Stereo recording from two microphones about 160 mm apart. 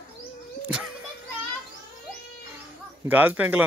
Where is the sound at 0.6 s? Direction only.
10° right (ahead or behind).